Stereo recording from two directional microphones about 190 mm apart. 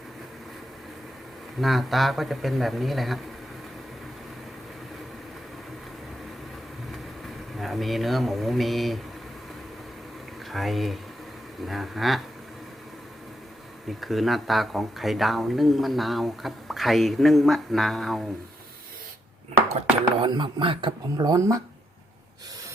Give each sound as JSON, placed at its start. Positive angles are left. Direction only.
{"t": 1.6, "sound": "speech", "side_deg": 0}
{"t": 7.6, "sound": "speech", "side_deg": 0}
{"t": 10.5, "sound": "speech", "side_deg": 0}
{"t": 13.8, "sound": "speech", "side_deg": 0}
{"t": 20.2, "sound": "speech", "side_deg": -25}